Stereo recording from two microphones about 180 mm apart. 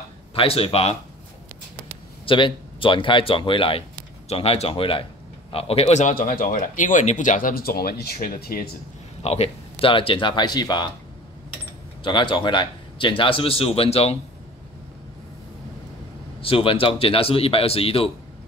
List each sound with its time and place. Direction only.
0.3 s speech: 30° left (ahead or behind)
2.2 s a man's voice: 30° left (ahead or behind); by 8.6 s 55° left (ahead or behind)
9.2 s a man's voice: 35° left (ahead or behind)
12.0 s a man's voice: 25° left (ahead or behind)
16.3 s speech: 30° left (ahead or behind)